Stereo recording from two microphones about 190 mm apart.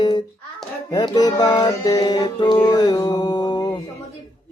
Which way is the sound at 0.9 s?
20° left (ahead or behind).